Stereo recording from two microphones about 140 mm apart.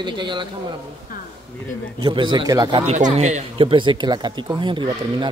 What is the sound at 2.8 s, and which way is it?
Speech, 55° right (ahead or behind).